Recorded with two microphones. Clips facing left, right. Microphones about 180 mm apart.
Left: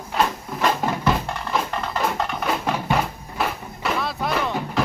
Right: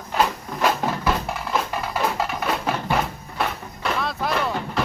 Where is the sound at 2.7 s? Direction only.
Centre (ahead or behind).